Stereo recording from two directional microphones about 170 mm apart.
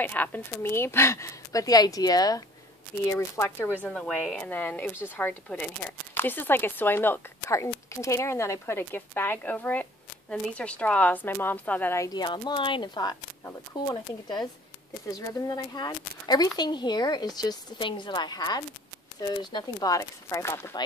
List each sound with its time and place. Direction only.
0.0 s a woman's voice: 10° left (ahead or behind)